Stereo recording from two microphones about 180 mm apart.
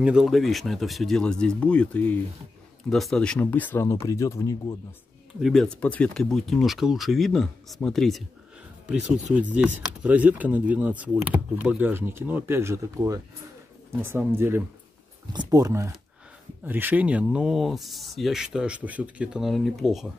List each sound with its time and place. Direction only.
0.0 s speech: 5° right (ahead or behind); by 4.7 s 15° left (ahead or behind)
5.4 s speech: centre (ahead or behind)